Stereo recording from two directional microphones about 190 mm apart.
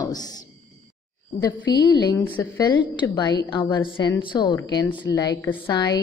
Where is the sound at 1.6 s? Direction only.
20° left (ahead or behind).